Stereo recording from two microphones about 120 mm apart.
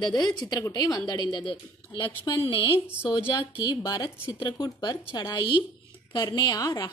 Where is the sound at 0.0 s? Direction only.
35° left (ahead or behind).